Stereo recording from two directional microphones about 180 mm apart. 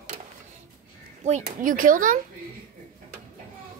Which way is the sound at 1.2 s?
45° right (ahead or behind).